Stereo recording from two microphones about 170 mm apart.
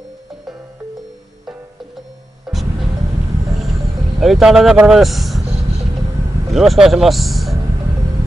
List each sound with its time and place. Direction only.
2.5 s music: centre (ahead or behind)
4.2 s speech: centre (ahead or behind)
6.5 s speech: centre (ahead or behind)